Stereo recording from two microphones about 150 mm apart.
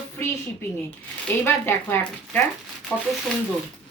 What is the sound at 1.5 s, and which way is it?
Speech, 15° left (ahead or behind).